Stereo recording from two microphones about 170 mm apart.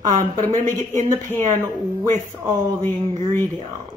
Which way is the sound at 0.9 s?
50° right (ahead or behind).